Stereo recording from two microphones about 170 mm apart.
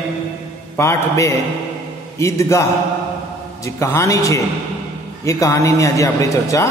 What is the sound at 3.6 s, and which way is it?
A man's voice, 15° left (ahead or behind).